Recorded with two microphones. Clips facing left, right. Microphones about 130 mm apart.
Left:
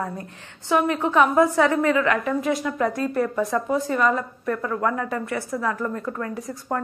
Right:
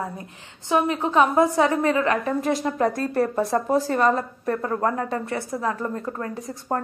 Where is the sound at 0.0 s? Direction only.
20° right (ahead or behind).